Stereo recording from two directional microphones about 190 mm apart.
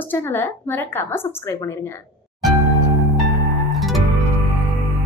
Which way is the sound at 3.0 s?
Centre (ahead or behind).